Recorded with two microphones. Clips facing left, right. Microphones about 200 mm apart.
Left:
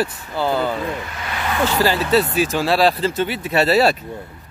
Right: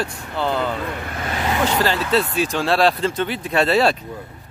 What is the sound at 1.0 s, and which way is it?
Speech, 50° right (ahead or behind).